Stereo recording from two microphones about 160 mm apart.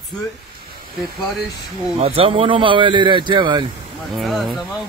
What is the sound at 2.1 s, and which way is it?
Speech, 35° right (ahead or behind).